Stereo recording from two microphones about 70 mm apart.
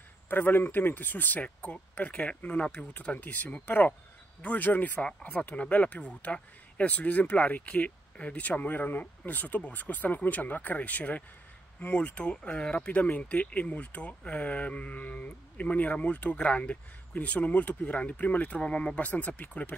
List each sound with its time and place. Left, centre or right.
0.3 s speech: left